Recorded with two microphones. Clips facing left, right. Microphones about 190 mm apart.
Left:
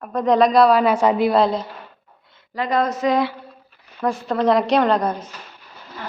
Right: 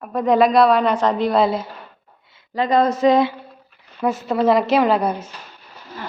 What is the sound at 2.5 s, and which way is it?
Speech, 25° right (ahead or behind).